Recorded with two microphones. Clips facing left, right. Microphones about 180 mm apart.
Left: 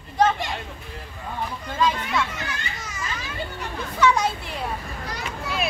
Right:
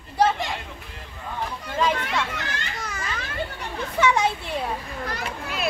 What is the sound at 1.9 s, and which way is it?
Children playing, 70° right (ahead or behind).